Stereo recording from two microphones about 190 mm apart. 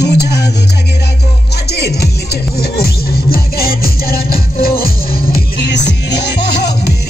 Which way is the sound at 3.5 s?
50° left (ahead or behind).